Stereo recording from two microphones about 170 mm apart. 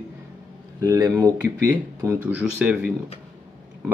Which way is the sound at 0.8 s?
20° right (ahead or behind).